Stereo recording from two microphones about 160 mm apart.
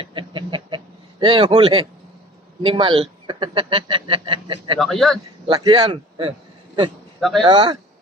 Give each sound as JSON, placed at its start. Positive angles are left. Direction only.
{"t": 0.0, "sound": "a sound", "side_deg": -30}
{"t": 1.2, "sound": "speech", "side_deg": -30}
{"t": 4.8, "sound": "speech", "side_deg": 0}
{"t": 5.5, "sound": "speech", "side_deg": -25}
{"t": 7.2, "sound": "speech", "side_deg": 0}
{"t": 7.4, "sound": "speech", "side_deg": -25}